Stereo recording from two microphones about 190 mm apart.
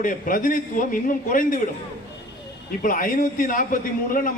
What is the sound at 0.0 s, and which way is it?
A man's voice, 45° left (ahead or behind).